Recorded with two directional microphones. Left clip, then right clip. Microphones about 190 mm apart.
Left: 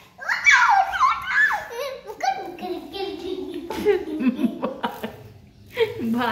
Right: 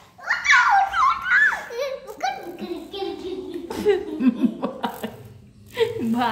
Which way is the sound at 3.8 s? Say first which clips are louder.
Right 1 dB; 20° right (ahead or behind).